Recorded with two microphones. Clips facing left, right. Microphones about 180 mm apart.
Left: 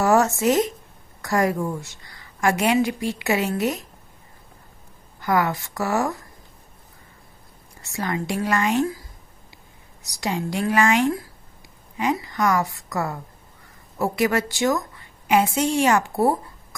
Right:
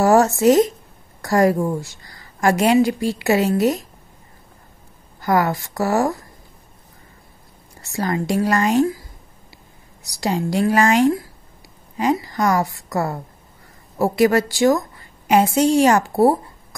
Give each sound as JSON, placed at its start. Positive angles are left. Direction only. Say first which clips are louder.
{"t": 0.0, "sound": "a woman's voice", "louder": "right 5 dB", "side_deg": -35}
{"t": 5.2, "sound": "a woman's voice", "louder": "right 3 dB", "side_deg": -40}
{"t": 7.8, "sound": "a woman's voice", "louder": "right 4 dB", "side_deg": -35}
{"t": 10.2, "sound": "a woman's voice", "louder": "right 5 dB", "side_deg": -35}